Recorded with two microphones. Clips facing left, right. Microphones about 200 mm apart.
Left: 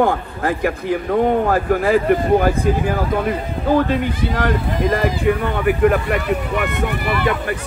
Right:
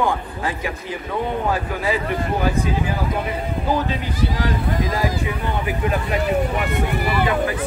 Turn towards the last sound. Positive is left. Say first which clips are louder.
# left 2 dB
turn(degrees=60)  # may be behind; listen again after turning